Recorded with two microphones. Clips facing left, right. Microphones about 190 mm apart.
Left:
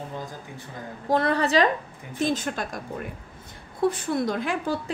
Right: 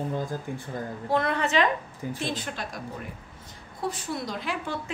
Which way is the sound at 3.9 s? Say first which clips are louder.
Left 5 dB; 50° left (ahead or behind).